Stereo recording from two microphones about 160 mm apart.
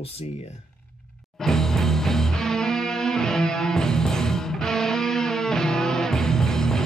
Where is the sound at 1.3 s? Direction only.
5° left (ahead or behind).